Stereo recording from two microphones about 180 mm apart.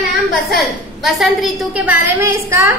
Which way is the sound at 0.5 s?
Centre (ahead or behind).